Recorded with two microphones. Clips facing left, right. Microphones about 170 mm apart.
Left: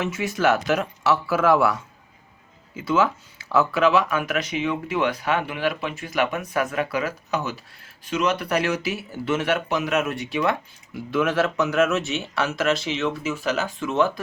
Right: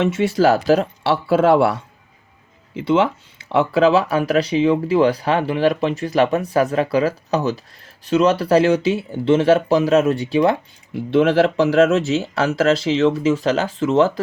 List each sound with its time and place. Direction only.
0.0 s speech: 30° right (ahead or behind)
13.3 s speech: 90° right
13.7 s speech: 25° right (ahead or behind)